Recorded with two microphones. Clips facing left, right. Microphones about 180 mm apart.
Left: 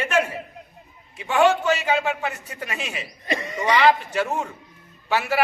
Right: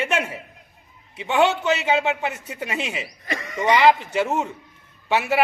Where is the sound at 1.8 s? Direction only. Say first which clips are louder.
Right 2 dB; 25° right (ahead or behind).